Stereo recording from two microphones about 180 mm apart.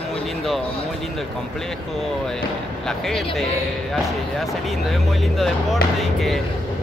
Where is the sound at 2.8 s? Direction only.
Centre (ahead or behind).